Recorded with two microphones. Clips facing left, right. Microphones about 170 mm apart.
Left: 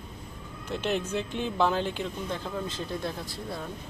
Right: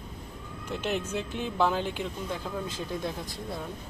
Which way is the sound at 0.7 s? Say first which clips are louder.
Left 2 dB; 10° right (ahead or behind).